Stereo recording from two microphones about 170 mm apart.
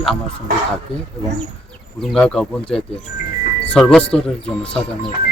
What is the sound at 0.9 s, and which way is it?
Speech, 35° left (ahead or behind).